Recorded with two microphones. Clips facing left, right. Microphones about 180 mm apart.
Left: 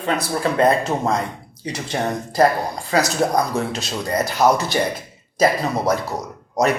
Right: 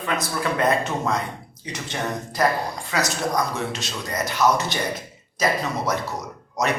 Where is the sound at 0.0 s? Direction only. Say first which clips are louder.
Left 4 dB; 30° left (ahead or behind).